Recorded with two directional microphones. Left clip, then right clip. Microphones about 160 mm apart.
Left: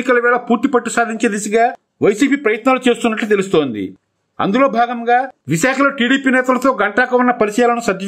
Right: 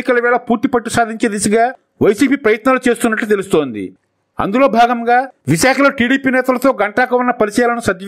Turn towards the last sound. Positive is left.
turn(degrees=-30)  # may be behind; listen again after turning